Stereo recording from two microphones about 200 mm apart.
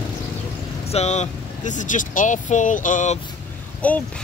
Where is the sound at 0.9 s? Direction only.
30° left (ahead or behind).